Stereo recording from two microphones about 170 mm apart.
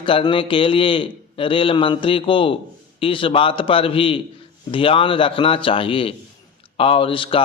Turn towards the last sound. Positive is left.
turn(degrees=30)  # may be behind; listen again after turning